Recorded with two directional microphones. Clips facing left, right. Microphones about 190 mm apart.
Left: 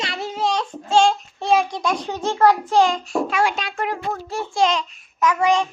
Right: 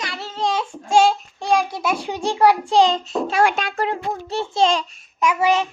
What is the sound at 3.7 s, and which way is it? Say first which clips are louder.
A child's voice: right 2 dB; 30° right (ahead or behind).